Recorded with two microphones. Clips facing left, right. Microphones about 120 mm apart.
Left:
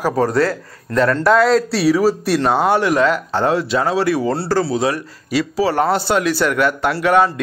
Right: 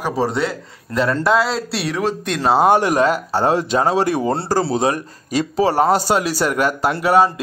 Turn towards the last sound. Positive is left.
turn(degrees=-35)  # may be behind; listen again after turning